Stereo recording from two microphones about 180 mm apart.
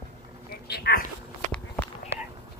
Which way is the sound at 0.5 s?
60° left (ahead or behind).